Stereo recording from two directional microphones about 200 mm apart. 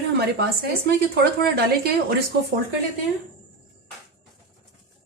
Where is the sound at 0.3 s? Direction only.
50° right (ahead or behind).